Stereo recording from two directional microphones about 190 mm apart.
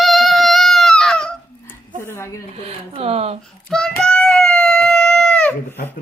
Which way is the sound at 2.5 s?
30° right (ahead or behind).